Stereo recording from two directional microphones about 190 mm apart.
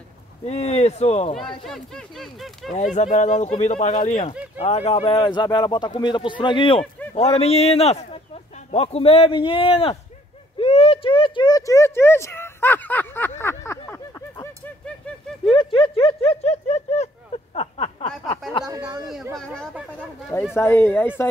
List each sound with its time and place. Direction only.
0.5 s speech: 35° left (ahead or behind)
1.6 s speech: centre (ahead or behind)
2.7 s speech: 40° left (ahead or behind); by 13.3 s 10° left (ahead or behind)
13.4 s a sound: 15° left (ahead or behind)
15.4 s speech: 25° left (ahead or behind)
17.6 s a sound: 30° left (ahead or behind)
18.7 s speech: 20° right (ahead or behind)
19.3 s speech: 5° left (ahead or behind)